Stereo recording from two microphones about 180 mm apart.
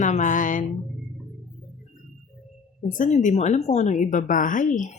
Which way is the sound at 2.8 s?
45° left (ahead or behind).